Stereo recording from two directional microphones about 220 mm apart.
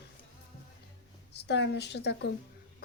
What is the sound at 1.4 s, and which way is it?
Speech, 50° left (ahead or behind).